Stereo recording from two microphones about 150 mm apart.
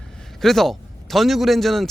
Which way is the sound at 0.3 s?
Centre (ahead or behind).